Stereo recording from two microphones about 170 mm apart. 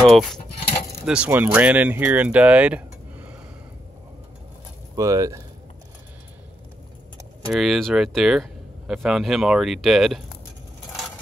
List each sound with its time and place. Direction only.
0.1 s speech: centre (ahead or behind)
4.9 s speech: 20° right (ahead or behind)
7.5 s speech: centre (ahead or behind)